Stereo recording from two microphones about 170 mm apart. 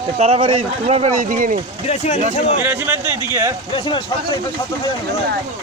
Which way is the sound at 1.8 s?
40° left (ahead or behind).